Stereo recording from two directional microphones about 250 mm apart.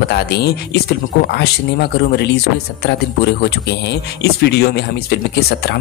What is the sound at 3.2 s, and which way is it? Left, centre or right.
Speech, left.